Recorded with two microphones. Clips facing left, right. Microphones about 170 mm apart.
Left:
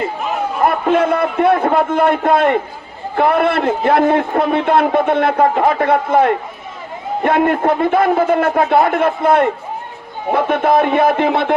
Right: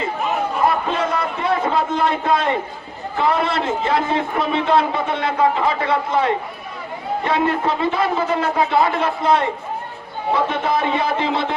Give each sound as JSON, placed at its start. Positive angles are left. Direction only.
{"t": 0.6, "sound": "a man's voice", "side_deg": 55}